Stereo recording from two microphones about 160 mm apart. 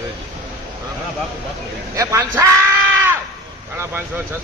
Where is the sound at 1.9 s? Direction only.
15° right (ahead or behind).